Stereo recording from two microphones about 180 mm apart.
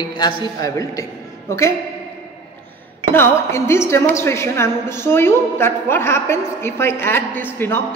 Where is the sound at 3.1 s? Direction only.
15° left (ahead or behind).